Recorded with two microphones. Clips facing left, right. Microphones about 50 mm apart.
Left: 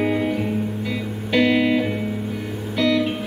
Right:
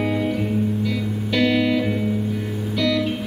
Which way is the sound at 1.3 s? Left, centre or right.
Centre.